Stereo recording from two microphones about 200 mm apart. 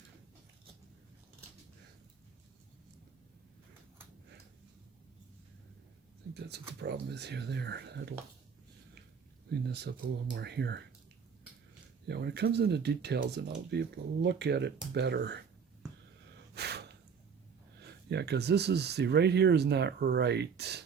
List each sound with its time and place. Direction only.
6.3 s speech: 55° right (ahead or behind)
9.5 s speech: 55° right (ahead or behind)
12.0 s speech: 55° right (ahead or behind)
16.6 s gasp: 55° right (ahead or behind)
17.7 s speech: 55° right (ahead or behind)